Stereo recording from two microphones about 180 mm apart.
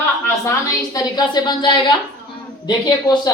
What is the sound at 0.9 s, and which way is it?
Speech, 20° left (ahead or behind).